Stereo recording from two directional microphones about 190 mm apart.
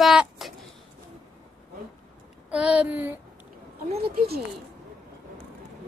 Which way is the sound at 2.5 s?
5° right (ahead or behind).